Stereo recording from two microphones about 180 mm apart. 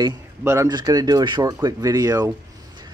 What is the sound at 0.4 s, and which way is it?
Speech, 15° right (ahead or behind).